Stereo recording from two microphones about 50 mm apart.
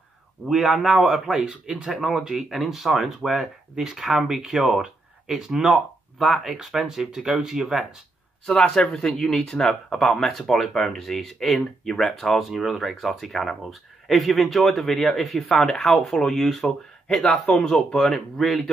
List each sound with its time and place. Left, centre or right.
0.5 s speech: centre
8.5 s speech: centre